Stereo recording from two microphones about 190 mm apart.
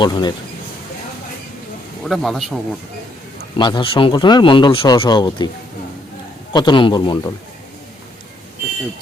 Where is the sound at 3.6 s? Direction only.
25° left (ahead or behind).